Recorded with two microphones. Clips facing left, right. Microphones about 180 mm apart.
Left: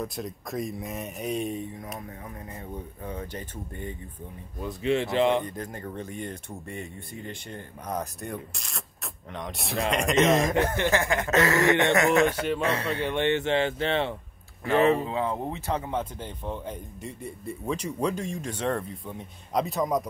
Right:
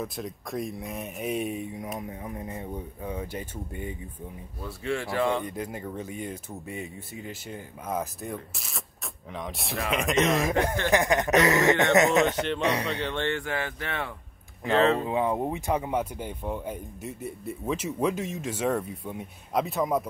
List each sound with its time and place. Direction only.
0.0 s speech: centre (ahead or behind)
4.6 s speech: 20° left (ahead or behind)
5.4 s speech: 10° right (ahead or behind)
10.9 s speech: 15° right (ahead or behind)
13.0 s speech: 15° left (ahead or behind)
14.8 s speech: 15° left (ahead or behind)
15.0 s speech: 15° right (ahead or behind)